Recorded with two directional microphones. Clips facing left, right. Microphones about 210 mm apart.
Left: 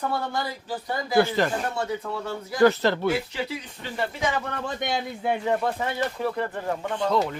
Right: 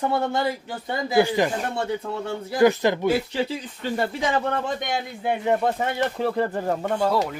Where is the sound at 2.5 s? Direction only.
15° right (ahead or behind).